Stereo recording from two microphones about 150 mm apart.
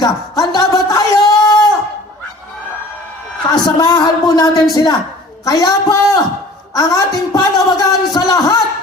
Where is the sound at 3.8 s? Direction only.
25° left (ahead or behind).